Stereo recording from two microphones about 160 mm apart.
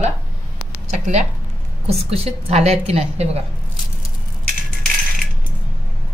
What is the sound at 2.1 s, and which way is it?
A woman's voice, 40° right (ahead or behind).